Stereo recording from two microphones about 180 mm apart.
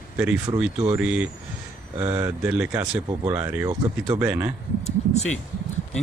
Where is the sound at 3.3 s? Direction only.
20° right (ahead or behind).